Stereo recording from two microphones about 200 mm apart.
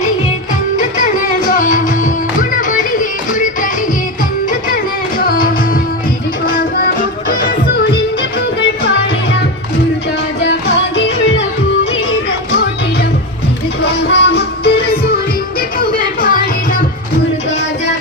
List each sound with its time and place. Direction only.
1.5 s music: 40° left (ahead or behind)
5.2 s music: 45° left (ahead or behind)
13.8 s music: 55° left (ahead or behind); by 16.8 s 40° left (ahead or behind)